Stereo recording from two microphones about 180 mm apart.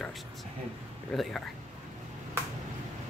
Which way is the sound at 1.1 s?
Centre (ahead or behind).